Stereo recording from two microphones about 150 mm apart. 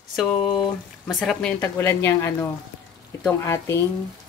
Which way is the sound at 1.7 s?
15° left (ahead or behind).